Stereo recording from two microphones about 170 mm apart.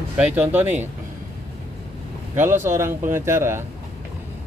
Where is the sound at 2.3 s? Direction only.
15° right (ahead or behind).